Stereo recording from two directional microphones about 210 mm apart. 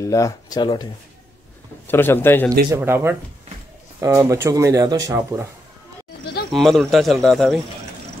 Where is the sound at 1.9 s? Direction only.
10° left (ahead or behind).